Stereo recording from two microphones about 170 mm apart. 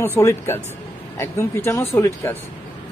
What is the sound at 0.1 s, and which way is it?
Speech, 15° left (ahead or behind).